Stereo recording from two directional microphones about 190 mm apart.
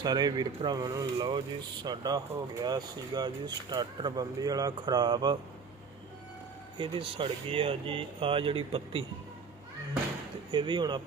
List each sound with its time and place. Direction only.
0.0 s speech: 20° right (ahead or behind)
6.7 s speech: 25° right (ahead or behind)
10.5 s speech: 25° right (ahead or behind)